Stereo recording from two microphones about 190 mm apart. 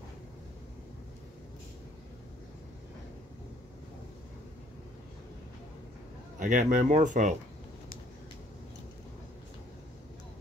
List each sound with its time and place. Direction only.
6.4 s speech: 40° right (ahead or behind)